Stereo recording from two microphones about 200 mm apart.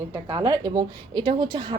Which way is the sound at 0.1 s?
15° right (ahead or behind).